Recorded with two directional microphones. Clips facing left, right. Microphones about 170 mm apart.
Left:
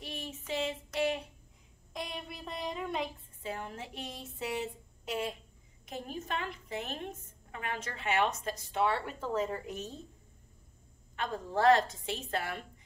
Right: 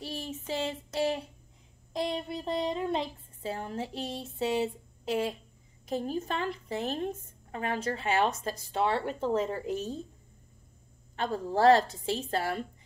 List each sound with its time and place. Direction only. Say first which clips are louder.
0.0 s child singing: right 5 dB; 35° right (ahead or behind)
2.0 s a woman's voice: right 9 dB; 30° right (ahead or behind)
11.1 s a woman's voice: right 4 dB; 35° right (ahead or behind)